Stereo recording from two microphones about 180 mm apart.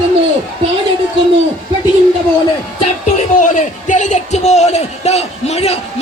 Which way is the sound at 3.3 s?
45° left (ahead or behind).